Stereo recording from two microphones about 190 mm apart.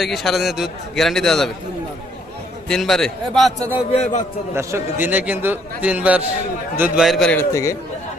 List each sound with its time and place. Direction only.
0.0 s a man's voice: centre (ahead or behind)
2.6 s a man's voice: centre (ahead or behind)
3.9 s a man's voice: 40° left (ahead or behind)
4.5 s a man's voice: 10° right (ahead or behind)
7.5 s a man's voice: 15° left (ahead or behind)